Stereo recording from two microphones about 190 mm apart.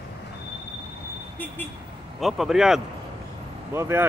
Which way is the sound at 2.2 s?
Centre (ahead or behind).